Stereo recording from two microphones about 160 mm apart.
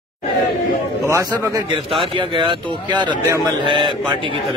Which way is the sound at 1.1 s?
25° right (ahead or behind).